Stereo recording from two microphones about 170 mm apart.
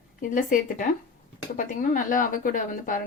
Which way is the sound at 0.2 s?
50° left (ahead or behind).